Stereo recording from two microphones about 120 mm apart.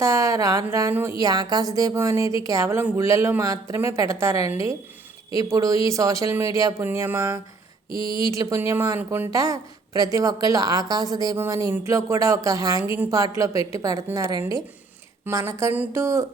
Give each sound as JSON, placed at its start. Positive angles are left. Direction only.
{"t": 0.0, "sound": "speech", "side_deg": -25}
{"t": 15.3, "sound": "speech", "side_deg": -25}